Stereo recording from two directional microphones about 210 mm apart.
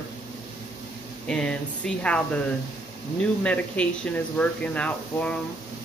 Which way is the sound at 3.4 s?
5° left (ahead or behind).